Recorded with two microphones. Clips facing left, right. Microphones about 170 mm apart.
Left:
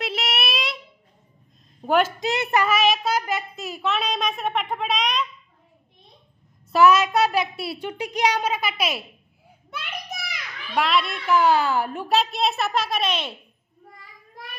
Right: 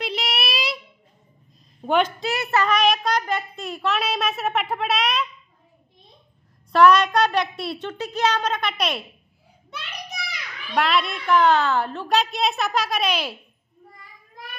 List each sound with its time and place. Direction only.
0.0 s a sound: centre (ahead or behind)
1.9 s a child's voice: 5° left (ahead or behind)
2.1 s a child's voice: 20° left (ahead or behind)
2.6 s a child's voice: 5° left (ahead or behind)
6.7 s a child's voice: 5° left (ahead or behind)
10.2 s a child's voice: centre (ahead or behind)
12.1 s a child's voice: centre (ahead or behind)